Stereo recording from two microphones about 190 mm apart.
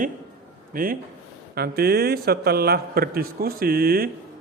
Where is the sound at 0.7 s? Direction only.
50° right (ahead or behind).